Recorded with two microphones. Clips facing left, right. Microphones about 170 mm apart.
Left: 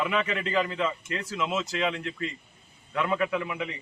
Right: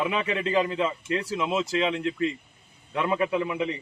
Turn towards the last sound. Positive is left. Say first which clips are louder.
# right 3 dB
turn(degrees=-25)  # may be behind; listen again after turning